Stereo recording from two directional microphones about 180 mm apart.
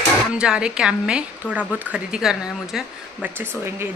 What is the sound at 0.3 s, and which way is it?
A woman's voice, 5° right (ahead or behind).